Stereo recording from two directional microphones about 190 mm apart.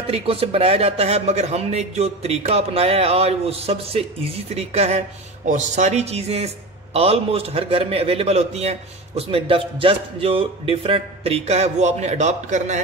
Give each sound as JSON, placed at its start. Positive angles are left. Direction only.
{"t": 0.0, "sound": "a man's voice", "side_deg": -30}